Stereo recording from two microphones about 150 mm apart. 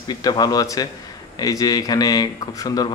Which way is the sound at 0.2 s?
25° left (ahead or behind).